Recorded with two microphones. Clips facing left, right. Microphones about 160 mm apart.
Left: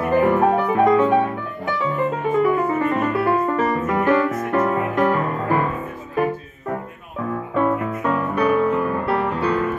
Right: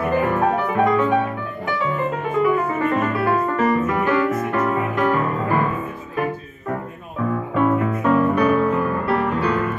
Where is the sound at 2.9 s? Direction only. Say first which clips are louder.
Even; 20° left (ahead or behind).